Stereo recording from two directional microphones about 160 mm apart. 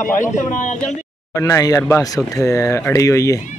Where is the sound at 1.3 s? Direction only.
20° left (ahead or behind).